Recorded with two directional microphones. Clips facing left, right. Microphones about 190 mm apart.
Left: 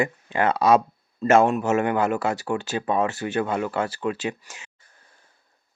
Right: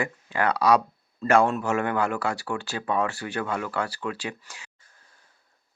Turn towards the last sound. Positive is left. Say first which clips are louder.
# left 5 dB
turn(degrees=20)  # may be behind; listen again after turning